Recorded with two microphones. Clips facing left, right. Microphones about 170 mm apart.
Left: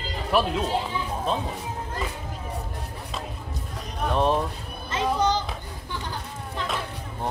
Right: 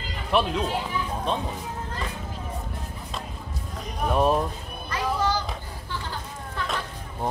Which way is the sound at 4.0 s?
5° right (ahead or behind).